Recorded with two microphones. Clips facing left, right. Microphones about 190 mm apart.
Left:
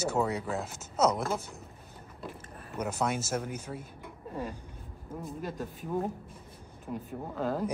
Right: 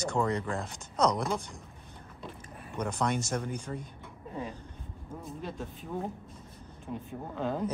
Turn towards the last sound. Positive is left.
turn(degrees=5)  # may be behind; listen again after turning